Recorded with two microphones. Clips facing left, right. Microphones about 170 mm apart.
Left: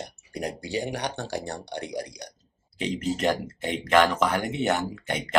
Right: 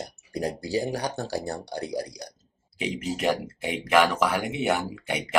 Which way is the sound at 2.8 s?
10° right (ahead or behind).